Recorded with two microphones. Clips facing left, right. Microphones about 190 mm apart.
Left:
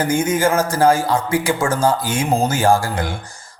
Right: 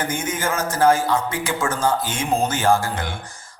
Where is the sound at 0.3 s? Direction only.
30° left (ahead or behind).